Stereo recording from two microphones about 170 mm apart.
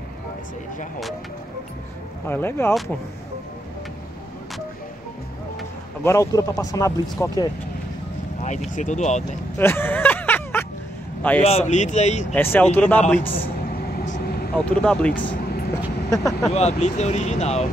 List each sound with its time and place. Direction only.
2.2 s speech: 15° left (ahead or behind)
6.0 s speech: 20° left (ahead or behind)
8.7 s speech: 45° left (ahead or behind)
9.6 s a sound: 15° left (ahead or behind)
11.4 s speech: 40° left (ahead or behind)
12.4 s speech: 10° left (ahead or behind)
13.7 s vehicle: 65° left (ahead or behind)
14.5 s speech: 5° left (ahead or behind)
15.4 s vehicle: 60° left (ahead or behind)
16.1 s speech: 20° left (ahead or behind)
16.5 s speech: 40° left (ahead or behind)